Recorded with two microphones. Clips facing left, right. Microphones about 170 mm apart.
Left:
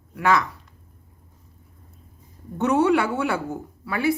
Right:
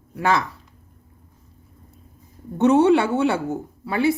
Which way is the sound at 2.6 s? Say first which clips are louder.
Right 4 dB; 25° right (ahead or behind).